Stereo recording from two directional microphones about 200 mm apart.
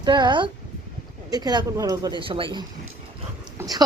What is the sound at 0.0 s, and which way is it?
A woman's voice, 20° right (ahead or behind).